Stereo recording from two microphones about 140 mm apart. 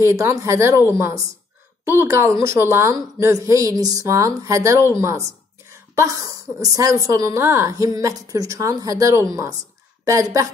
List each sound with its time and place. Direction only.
0.0 s a woman's voice: 20° right (ahead or behind)